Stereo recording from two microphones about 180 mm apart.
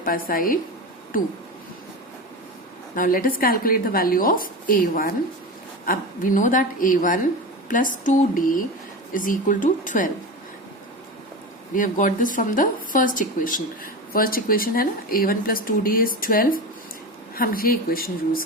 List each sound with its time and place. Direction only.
0.0 s speech: 55° left (ahead or behind)
2.9 s speech: 50° left (ahead or behind)
11.7 s speech: 45° left (ahead or behind)